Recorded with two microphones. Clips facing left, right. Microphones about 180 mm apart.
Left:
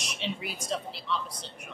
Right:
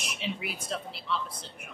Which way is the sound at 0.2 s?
5° right (ahead or behind).